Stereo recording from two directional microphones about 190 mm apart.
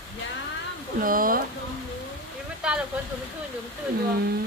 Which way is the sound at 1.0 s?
45° right (ahead or behind).